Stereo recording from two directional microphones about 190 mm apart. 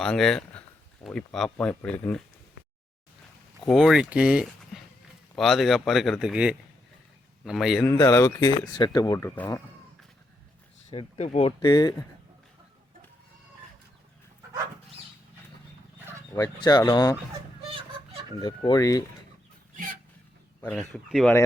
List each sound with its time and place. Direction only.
0.0 s speech: 5° left (ahead or behind)
3.7 s speech: centre (ahead or behind)
7.9 s speech: 20° left (ahead or behind)
10.8 s speech: 35° left (ahead or behind)
16.3 s speech: 20° left (ahead or behind)
18.3 s speech: 20° left (ahead or behind)
20.6 s speech: 5° left (ahead or behind)